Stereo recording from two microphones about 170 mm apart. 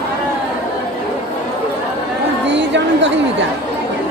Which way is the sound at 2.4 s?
90° right.